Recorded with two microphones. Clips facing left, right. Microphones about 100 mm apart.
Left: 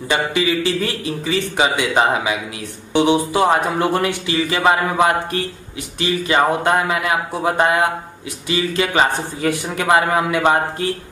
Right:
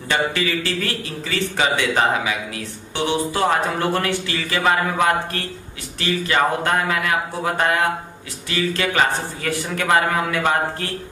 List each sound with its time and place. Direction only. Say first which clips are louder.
0.1 s speech: left 3 dB; 15° left (ahead or behind)